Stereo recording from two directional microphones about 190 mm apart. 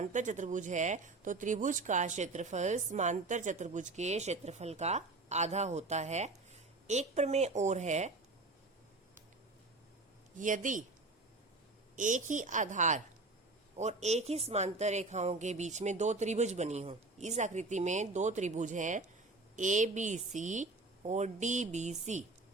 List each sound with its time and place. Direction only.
0.0 s speech: 40° right (ahead or behind)
10.3 s a man's voice: 45° right (ahead or behind)
11.9 s speech: 40° right (ahead or behind)